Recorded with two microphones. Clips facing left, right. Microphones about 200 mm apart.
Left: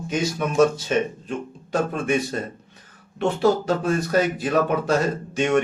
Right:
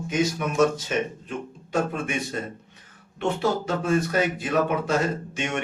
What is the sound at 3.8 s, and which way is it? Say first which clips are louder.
Speech: even; 40° left (ahead or behind).